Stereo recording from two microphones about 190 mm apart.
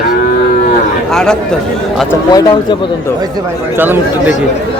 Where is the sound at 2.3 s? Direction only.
20° left (ahead or behind).